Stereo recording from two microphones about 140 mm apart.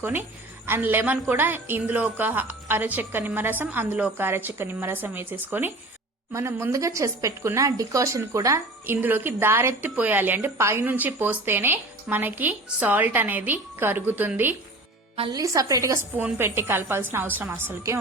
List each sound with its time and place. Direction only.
0.0 s a woman's voice: 15° right (ahead or behind)
15.3 s a woman's voice: 25° right (ahead or behind)